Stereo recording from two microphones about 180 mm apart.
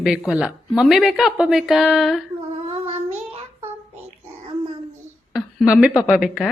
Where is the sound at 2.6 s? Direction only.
35° right (ahead or behind).